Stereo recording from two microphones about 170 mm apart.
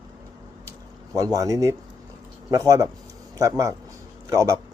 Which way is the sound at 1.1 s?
20° right (ahead or behind).